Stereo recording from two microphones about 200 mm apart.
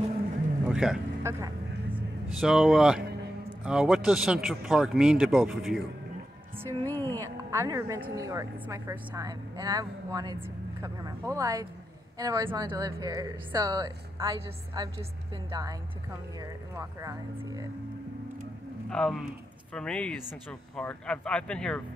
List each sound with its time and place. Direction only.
0.7 s speech: 5° right (ahead or behind)
1.3 s a woman's voice: 15° right (ahead or behind)
2.2 s speech: centre (ahead or behind)
6.8 s speech: 10° left (ahead or behind)
7.2 s a woman's voice: 15° right (ahead or behind)
18.9 s speech: 5° left (ahead or behind)